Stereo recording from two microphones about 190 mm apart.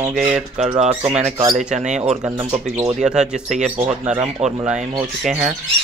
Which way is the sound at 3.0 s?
5° right (ahead or behind).